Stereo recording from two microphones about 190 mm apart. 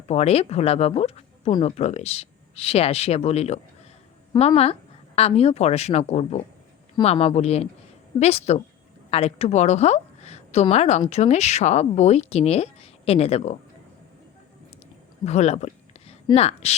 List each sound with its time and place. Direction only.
0.1 s a woman's voice: 35° left (ahead or behind)
15.2 s a sound: 35° left (ahead or behind)
16.2 s a woman's voice: 30° left (ahead or behind)